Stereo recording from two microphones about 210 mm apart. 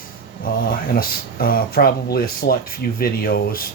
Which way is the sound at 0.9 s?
45° left (ahead or behind).